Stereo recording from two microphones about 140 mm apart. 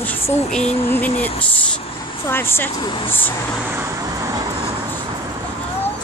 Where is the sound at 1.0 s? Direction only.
10° left (ahead or behind).